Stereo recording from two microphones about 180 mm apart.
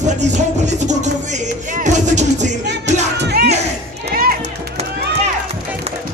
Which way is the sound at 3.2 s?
65° right (ahead or behind).